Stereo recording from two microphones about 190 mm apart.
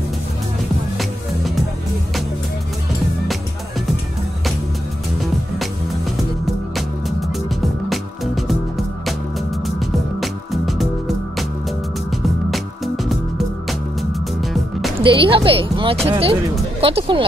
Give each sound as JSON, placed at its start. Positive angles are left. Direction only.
{"t": 0.9, "sound": "music", "side_deg": 0}
{"t": 6.4, "sound": "music", "side_deg": 0}
{"t": 12.1, "sound": "music", "side_deg": 0}
{"t": 14.4, "sound": "music", "side_deg": 0}
{"t": 15.0, "sound": "speech", "side_deg": -30}